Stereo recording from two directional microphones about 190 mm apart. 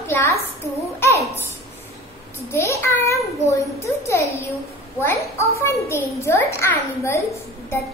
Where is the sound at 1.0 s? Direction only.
15° left (ahead or behind).